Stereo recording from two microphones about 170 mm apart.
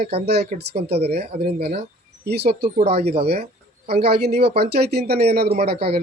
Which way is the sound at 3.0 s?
35° right (ahead or behind).